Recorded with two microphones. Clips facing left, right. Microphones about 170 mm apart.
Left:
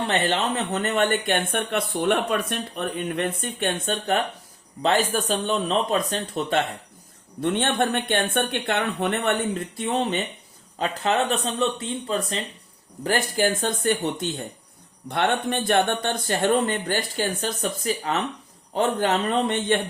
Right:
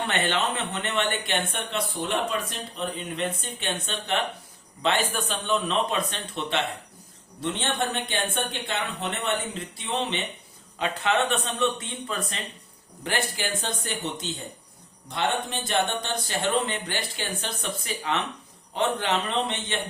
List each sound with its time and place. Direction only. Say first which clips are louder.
0.1 s speech: left 3 dB; 35° left (ahead or behind)
7.4 s speech: left 5 dB; 55° left (ahead or behind); by 12.4 s 35° left (ahead or behind)
13.1 s speech: left 7 dB; 45° left (ahead or behind)